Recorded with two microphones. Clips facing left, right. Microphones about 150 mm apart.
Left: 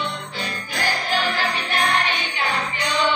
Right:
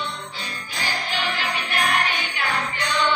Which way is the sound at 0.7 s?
45° left (ahead or behind).